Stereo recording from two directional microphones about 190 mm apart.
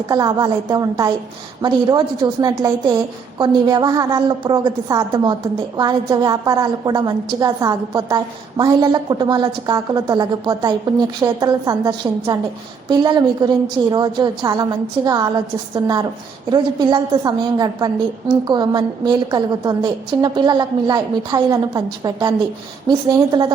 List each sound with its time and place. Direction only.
0.1 s a woman's voice: 20° right (ahead or behind)